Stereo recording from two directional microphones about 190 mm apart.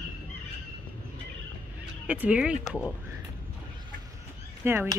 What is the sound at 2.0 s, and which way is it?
Speech, 5° right (ahead or behind).